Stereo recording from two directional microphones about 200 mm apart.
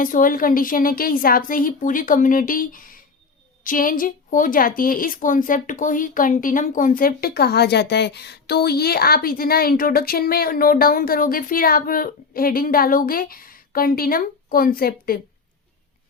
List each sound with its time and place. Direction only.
0.0 s a woman's voice: 45° left (ahead or behind)